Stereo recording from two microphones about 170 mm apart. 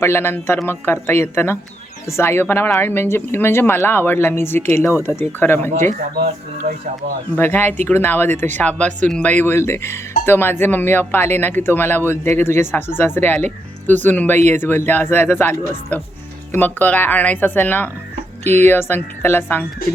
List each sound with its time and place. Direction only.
0.0 s speech: 15° left (ahead or behind)
6.1 s speech: 45° right (ahead or behind)
7.3 s speech: 10° left (ahead or behind)